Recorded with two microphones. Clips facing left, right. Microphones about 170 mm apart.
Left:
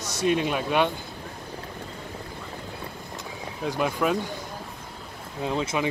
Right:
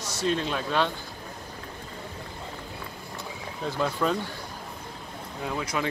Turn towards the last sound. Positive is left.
turn(degrees=20)  # may be behind; listen again after turning